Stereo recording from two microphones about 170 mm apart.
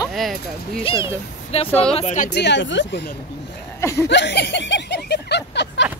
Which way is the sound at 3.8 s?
15° left (ahead or behind).